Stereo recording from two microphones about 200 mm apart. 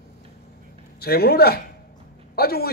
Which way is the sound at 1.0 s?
50° left (ahead or behind).